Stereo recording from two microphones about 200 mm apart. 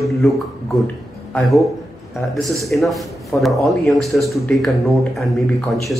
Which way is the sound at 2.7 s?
Centre (ahead or behind).